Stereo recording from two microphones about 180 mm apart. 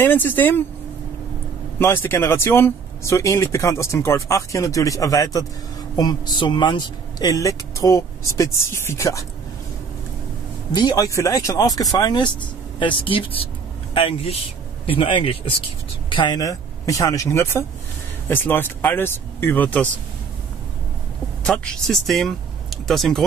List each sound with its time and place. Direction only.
0.0 s speech: 10° left (ahead or behind)
1.8 s speech: 10° left (ahead or behind)
10.7 s speech: 25° left (ahead or behind)
21.5 s speech: centre (ahead or behind)